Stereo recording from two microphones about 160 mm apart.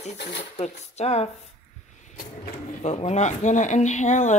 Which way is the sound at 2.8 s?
45° left (ahead or behind).